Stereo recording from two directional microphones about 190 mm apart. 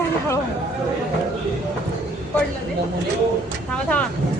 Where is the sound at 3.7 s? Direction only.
5° left (ahead or behind).